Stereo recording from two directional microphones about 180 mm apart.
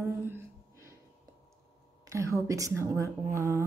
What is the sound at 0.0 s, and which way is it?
Gasp, 15° right (ahead or behind).